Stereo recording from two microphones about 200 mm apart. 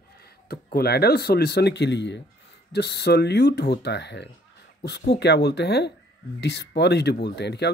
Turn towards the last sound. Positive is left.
turn(degrees=55)  # may be behind; listen again after turning